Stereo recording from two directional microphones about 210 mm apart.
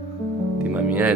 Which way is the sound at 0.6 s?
5° right (ahead or behind).